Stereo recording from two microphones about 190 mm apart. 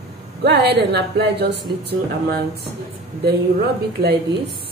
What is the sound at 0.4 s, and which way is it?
A woman's voice, 60° right (ahead or behind).